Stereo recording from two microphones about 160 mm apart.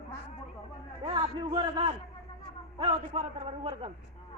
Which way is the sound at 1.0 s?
30° right (ahead or behind).